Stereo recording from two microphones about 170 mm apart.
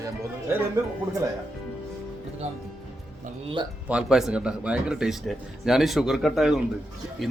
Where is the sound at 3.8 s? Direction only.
5° right (ahead or behind).